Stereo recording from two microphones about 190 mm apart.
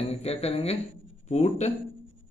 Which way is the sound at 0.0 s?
35° left (ahead or behind).